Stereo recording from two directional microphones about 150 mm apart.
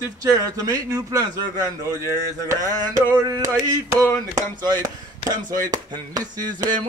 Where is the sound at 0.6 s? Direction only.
25° right (ahead or behind).